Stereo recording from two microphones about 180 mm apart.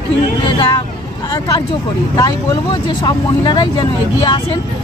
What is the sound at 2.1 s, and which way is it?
Speech, 25° left (ahead or behind).